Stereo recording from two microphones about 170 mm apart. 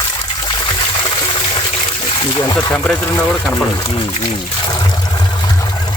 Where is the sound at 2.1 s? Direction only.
30° left (ahead or behind).